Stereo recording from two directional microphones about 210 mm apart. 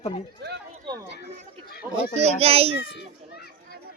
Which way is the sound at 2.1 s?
30° right (ahead or behind).